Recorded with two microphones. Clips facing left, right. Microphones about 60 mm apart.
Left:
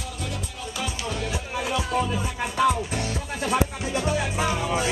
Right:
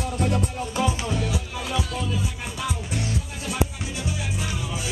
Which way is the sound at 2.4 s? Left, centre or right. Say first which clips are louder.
Left 8 dB; left.